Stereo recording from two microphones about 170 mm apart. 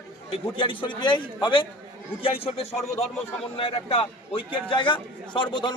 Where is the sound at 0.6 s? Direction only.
30° left (ahead or behind).